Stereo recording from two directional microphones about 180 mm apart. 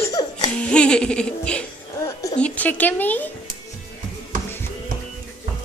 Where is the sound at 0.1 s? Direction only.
20° left (ahead or behind).